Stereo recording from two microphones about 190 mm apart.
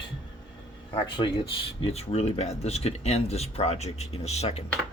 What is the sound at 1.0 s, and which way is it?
Speech, 25° left (ahead or behind).